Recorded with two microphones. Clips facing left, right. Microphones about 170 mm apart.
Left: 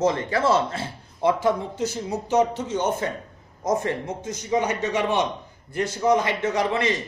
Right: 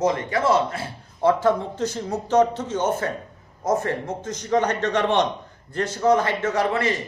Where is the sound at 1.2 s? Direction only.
15° left (ahead or behind).